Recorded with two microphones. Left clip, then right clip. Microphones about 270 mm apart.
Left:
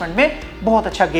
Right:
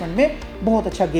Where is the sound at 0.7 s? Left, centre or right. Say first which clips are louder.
Left 4 dB; left.